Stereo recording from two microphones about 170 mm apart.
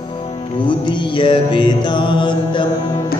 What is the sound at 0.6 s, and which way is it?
Mantra, 30° left (ahead or behind).